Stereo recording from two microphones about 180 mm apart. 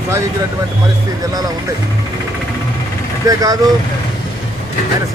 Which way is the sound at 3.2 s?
20° right (ahead or behind).